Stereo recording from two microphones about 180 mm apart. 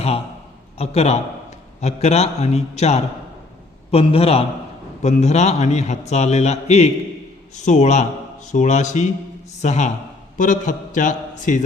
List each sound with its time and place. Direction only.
0.8 s a man's voice: 35° left (ahead or behind)